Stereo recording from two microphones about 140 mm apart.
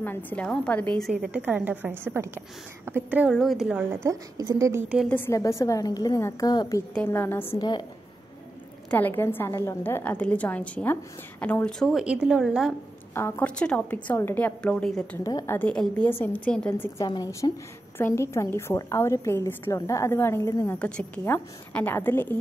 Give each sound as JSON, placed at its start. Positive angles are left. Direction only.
{"t": 0.0, "sound": "a woman's voice", "side_deg": 15}
{"t": 1.1, "sound": "a woman's voice", "side_deg": -10}
{"t": 3.9, "sound": "a woman's voice", "side_deg": -20}
{"t": 5.0, "sound": "a woman's voice", "side_deg": 15}
{"t": 6.9, "sound": "a woman's voice", "side_deg": 15}
{"t": 7.5, "sound": "a woman's voice", "side_deg": 30}
{"t": 8.9, "sound": "a woman's voice", "side_deg": 15}
{"t": 11.9, "sound": "a woman's voice", "side_deg": -5}
{"t": 13.1, "sound": "a woman's voice", "side_deg": 15}
{"t": 15.2, "sound": "a woman's voice", "side_deg": 20}
{"t": 17.0, "sound": "a woman's voice", "side_deg": 25}
{"t": 20.8, "sound": "a woman's voice", "side_deg": 10}